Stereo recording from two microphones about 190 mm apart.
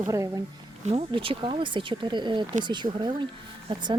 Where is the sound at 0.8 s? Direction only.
30° right (ahead or behind).